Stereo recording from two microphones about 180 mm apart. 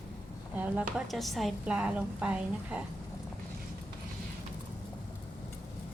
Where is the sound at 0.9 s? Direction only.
Centre (ahead or behind).